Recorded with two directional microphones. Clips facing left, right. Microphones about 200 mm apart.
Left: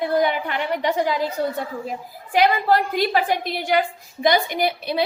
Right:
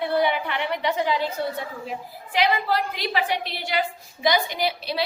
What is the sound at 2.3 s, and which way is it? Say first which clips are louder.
A woman's voice: left 5 dB; 50° left (ahead or behind).